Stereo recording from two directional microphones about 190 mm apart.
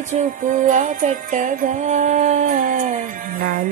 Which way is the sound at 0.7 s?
40° right (ahead or behind).